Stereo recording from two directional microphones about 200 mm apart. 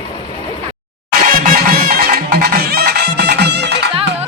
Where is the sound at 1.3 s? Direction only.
45° right (ahead or behind).